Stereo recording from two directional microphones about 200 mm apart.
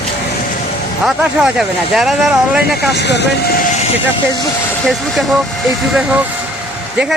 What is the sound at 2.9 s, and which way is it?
Speech, 60° left (ahead or behind).